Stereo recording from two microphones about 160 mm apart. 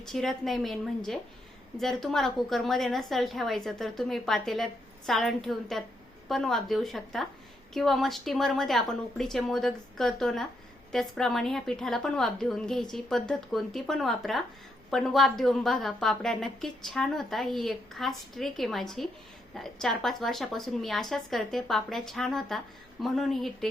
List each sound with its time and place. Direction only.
0.0 s a woman's voice: centre (ahead or behind)